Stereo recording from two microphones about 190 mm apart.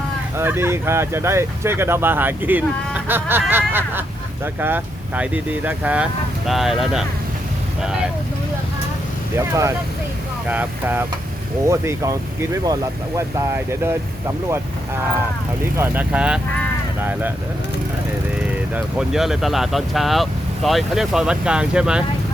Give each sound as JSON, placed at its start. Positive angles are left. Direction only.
{"t": 0.3, "sound": "speech", "side_deg": -10}
{"t": 3.5, "sound": "a sound", "side_deg": -10}
{"t": 4.6, "sound": "speech", "side_deg": -10}
{"t": 9.3, "sound": "speech", "side_deg": -15}
{"t": 15.8, "sound": "speech", "side_deg": -10}
{"t": 18.7, "sound": "speech", "side_deg": -5}